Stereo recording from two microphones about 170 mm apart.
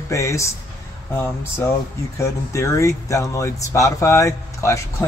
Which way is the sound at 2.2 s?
15° left (ahead or behind).